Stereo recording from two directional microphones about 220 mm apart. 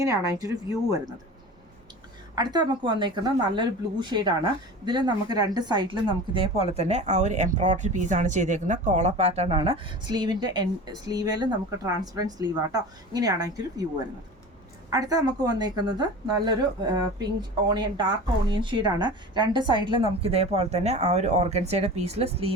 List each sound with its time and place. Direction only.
0.0 s a woman's voice: 15° right (ahead or behind)
2.3 s speech: 20° right (ahead or behind)
14.8 s a woman's voice: 15° right (ahead or behind)